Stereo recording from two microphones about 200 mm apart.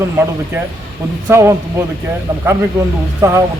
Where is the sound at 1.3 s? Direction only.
15° right (ahead or behind).